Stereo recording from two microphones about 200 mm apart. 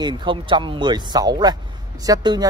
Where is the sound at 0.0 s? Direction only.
25° right (ahead or behind).